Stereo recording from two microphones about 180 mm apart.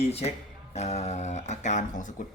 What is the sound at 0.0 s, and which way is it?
A man's voice, 35° left (ahead or behind).